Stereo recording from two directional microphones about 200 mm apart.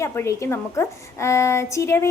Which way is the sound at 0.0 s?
15° left (ahead or behind).